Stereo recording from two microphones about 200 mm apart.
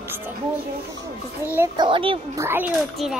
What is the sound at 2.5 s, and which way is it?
Speech, 10° right (ahead or behind).